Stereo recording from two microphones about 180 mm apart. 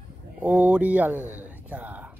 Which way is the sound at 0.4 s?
5° right (ahead or behind).